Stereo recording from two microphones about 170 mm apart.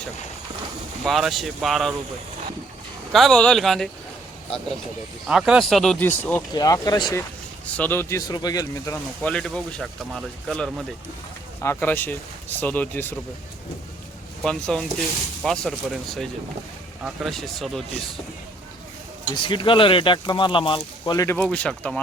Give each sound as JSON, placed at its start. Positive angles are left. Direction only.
{"t": 1.0, "sound": "speech", "side_deg": 0}
{"t": 3.1, "sound": "speech", "side_deg": 0}
{"t": 5.3, "sound": "speech", "side_deg": 0}
{"t": 6.5, "sound": "speech", "side_deg": 25}
{"t": 9.2, "sound": "speech", "side_deg": 5}
{"t": 14.4, "sound": "speech", "side_deg": 5}
{"t": 19.3, "sound": "speech", "side_deg": 30}
{"t": 21.3, "sound": "speech", "side_deg": 5}